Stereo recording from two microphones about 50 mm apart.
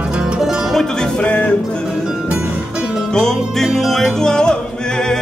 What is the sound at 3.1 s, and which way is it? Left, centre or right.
Music, centre.